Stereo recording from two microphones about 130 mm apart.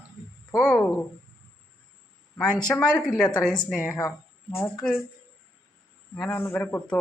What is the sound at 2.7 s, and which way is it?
A man's voice, 10° left (ahead or behind).